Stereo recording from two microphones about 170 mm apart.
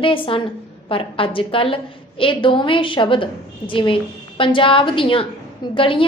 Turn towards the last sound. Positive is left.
turn(degrees=30)  # may be behind; listen again after turning